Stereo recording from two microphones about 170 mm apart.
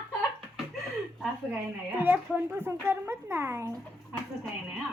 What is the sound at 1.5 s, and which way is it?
A woman's voice, 10° right (ahead or behind).